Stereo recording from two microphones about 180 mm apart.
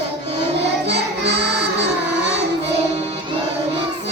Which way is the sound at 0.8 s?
75° right (ahead or behind).